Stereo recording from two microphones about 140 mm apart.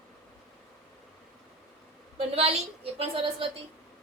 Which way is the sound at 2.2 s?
50° right (ahead or behind).